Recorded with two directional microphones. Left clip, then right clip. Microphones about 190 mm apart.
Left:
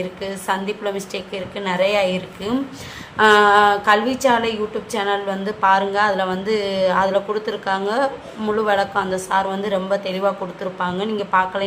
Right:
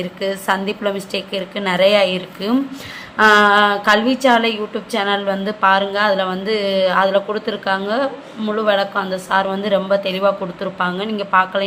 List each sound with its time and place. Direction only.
0.3 s a woman's voice: 25° right (ahead or behind)